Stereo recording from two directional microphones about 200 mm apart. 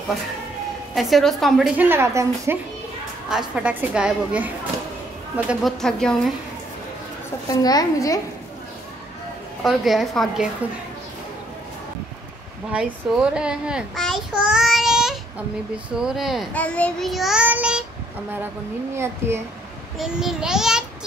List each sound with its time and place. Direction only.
0.9 s a child's voice: centre (ahead or behind)
5.5 s a child's voice: centre (ahead or behind)
7.4 s a child's voice: 20° left (ahead or behind)
9.6 s a child's voice: centre (ahead or behind)
12.7 s a child's voice: 5° right (ahead or behind)
18.9 s a child's voice: 10° right (ahead or behind)